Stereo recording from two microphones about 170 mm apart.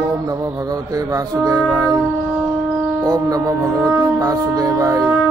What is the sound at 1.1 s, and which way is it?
Music, 20° right (ahead or behind).